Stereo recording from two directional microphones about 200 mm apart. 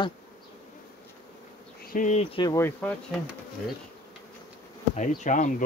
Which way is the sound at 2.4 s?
15° left (ahead or behind).